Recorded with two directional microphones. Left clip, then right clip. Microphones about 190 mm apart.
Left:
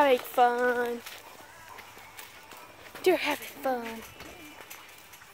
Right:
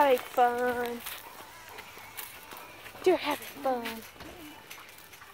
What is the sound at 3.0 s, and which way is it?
Speech, 15° left (ahead or behind).